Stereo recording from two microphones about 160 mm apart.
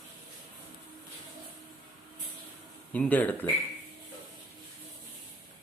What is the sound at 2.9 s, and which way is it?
Speech, 10° left (ahead or behind).